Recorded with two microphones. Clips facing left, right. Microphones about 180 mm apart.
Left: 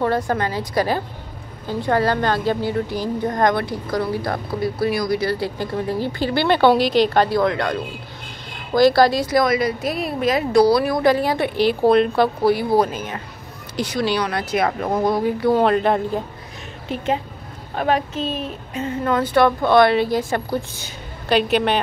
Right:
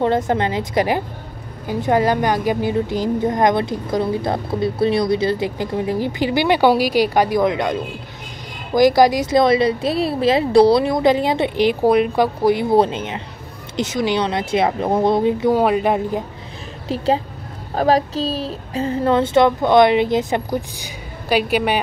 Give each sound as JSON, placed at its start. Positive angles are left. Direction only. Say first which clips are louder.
{"t": 0.0, "sound": "a woman's voice", "louder": "right 3 dB", "side_deg": -20}
{"t": 15.5, "sound": "speech", "louder": "even", "side_deg": -10}
{"t": 16.9, "sound": "a woman's voice", "louder": "right 4 dB", "side_deg": -35}